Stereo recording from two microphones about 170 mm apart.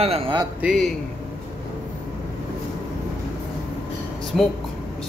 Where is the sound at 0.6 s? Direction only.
Centre (ahead or behind).